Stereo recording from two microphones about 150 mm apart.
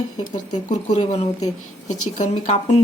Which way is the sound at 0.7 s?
50° left (ahead or behind).